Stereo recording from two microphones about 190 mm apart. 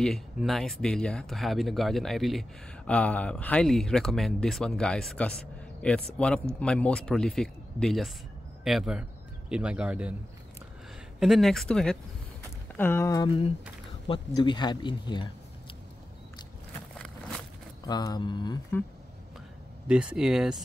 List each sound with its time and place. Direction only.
0.0 s speech: centre (ahead or behind)
11.1 s speech: centre (ahead or behind); by 15.2 s 25° left (ahead or behind)
17.8 s speech: 20° left (ahead or behind)
19.9 s speech: 5° right (ahead or behind)